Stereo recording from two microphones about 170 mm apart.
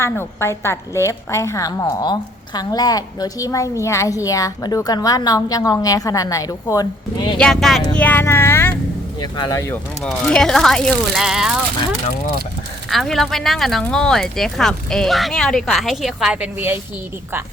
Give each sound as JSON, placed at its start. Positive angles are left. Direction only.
{"t": 0.0, "sound": "a woman's voice", "side_deg": 15}
{"t": 7.3, "sound": "a woman's voice", "side_deg": 5}
{"t": 10.0, "sound": "speech", "side_deg": 5}